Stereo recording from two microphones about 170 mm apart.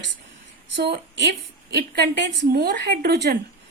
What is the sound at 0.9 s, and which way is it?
Speech, 90° right.